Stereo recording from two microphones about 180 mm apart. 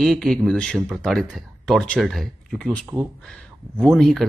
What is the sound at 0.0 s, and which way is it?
Speech, centre (ahead or behind).